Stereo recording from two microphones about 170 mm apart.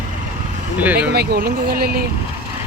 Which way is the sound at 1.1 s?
70° right (ahead or behind).